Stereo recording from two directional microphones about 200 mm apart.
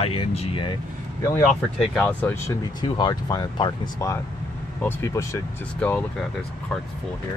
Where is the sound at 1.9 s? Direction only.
10° left (ahead or behind).